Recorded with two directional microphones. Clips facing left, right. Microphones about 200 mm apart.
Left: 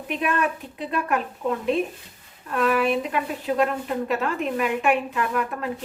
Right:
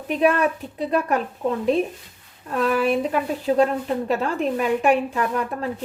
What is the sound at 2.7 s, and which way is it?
A woman's voice, 35° right (ahead or behind).